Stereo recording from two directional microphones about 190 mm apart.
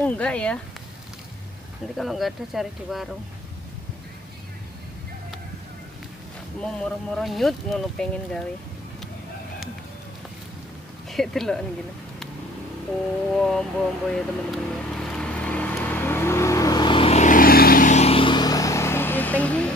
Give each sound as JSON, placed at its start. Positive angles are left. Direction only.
{"t": 0.0, "sound": "speech", "side_deg": 5}
{"t": 2.0, "sound": "speech", "side_deg": 0}
{"t": 6.6, "sound": "speech", "side_deg": 5}
{"t": 11.1, "sound": "speech", "side_deg": 0}
{"t": 13.3, "sound": "speech", "side_deg": 0}
{"t": 14.1, "sound": "vehicle", "side_deg": 5}